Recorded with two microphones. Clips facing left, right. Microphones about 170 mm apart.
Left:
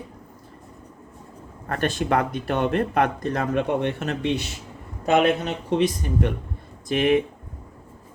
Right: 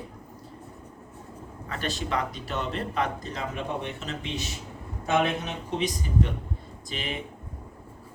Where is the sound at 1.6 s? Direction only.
55° left (ahead or behind).